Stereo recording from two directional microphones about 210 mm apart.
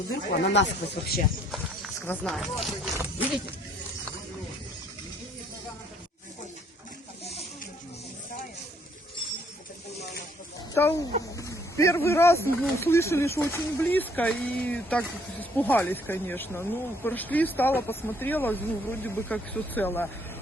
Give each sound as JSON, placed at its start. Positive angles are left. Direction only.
{"t": 0.4, "sound": "speech", "side_deg": 55}
{"t": 1.5, "sound": "speech", "side_deg": 0}
{"t": 2.9, "sound": "a sound", "side_deg": -10}
{"t": 10.8, "sound": "speech", "side_deg": 10}